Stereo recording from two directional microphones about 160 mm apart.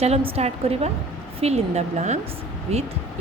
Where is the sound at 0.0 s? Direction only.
40° right (ahead or behind).